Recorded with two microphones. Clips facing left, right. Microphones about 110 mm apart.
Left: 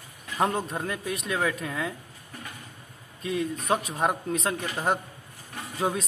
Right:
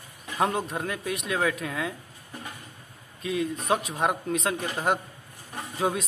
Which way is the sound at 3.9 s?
Centre (ahead or behind).